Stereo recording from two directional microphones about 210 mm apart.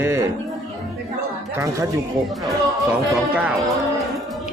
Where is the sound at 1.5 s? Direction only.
15° right (ahead or behind).